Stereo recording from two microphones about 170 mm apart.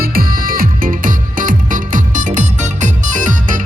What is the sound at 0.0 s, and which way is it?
Music, 60° right (ahead or behind).